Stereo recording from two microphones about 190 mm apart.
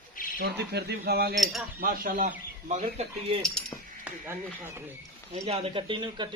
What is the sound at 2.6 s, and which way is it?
Cutlery, 35° right (ahead or behind).